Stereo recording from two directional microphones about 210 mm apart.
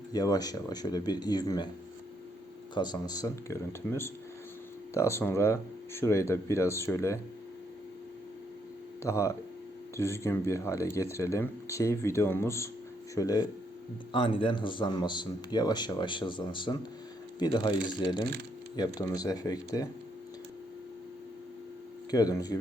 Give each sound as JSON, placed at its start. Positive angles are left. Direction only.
{"t": 0.1, "sound": "speech", "side_deg": 20}
{"t": 2.7, "sound": "speech", "side_deg": 20}
{"t": 9.0, "sound": "speech", "side_deg": 15}
{"t": 22.1, "sound": "speech", "side_deg": 15}